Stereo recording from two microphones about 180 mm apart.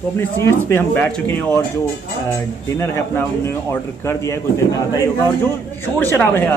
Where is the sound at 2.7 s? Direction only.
15° left (ahead or behind).